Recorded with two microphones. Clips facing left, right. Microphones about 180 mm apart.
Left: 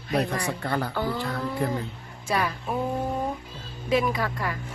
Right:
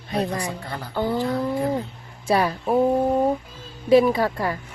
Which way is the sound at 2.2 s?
35° right (ahead or behind).